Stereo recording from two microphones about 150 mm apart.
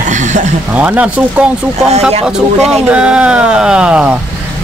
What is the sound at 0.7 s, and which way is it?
Speech, 10° right (ahead or behind).